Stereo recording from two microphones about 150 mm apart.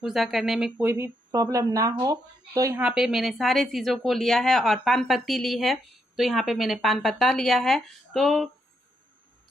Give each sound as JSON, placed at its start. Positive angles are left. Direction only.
{"t": 0.0, "sound": "speech", "side_deg": 0}
{"t": 2.8, "sound": "a woman's voice", "side_deg": -5}